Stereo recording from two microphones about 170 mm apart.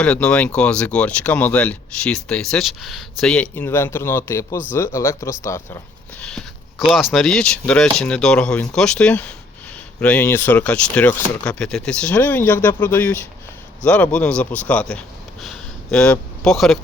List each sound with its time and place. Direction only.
0.0 s speech: 5° left (ahead or behind)
6.2 s a sound: 5° left (ahead or behind)
6.9 s speech: centre (ahead or behind)